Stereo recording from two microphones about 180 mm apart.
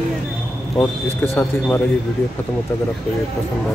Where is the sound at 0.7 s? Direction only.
10° left (ahead or behind).